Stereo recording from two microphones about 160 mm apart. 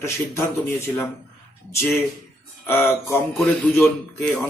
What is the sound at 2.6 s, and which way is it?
A man's voice, 10° left (ahead or behind).